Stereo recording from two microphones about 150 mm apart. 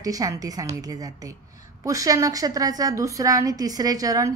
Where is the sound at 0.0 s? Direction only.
25° right (ahead or behind).